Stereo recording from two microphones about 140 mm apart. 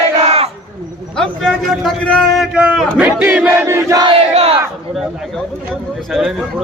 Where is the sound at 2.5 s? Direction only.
5° right (ahead or behind); by 4.1 s 20° right (ahead or behind).